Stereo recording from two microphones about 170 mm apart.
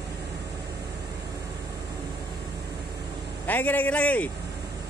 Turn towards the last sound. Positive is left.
turn(degrees=10)  # may be behind; listen again after turning